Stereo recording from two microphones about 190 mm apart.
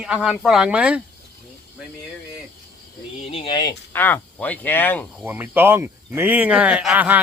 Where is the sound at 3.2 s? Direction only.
30° left (ahead or behind).